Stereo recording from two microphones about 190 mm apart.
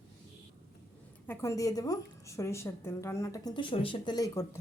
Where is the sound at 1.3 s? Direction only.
15° left (ahead or behind).